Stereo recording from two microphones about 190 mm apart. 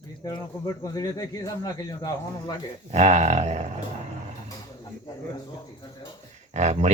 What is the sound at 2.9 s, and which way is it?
Speech, 40° right (ahead or behind).